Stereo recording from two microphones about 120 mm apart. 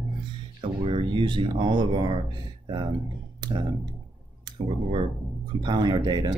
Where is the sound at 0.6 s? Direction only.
50° right (ahead or behind).